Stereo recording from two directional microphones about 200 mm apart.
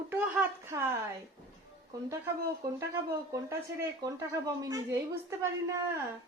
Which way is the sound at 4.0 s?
15° right (ahead or behind).